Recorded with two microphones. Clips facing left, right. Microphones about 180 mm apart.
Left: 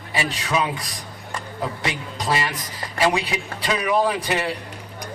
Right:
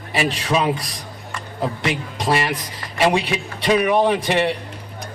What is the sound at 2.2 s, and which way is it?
A man's voice, 30° right (ahead or behind).